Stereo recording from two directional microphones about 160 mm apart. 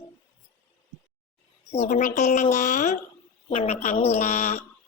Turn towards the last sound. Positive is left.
turn(degrees=45)  # may be behind; listen again after turning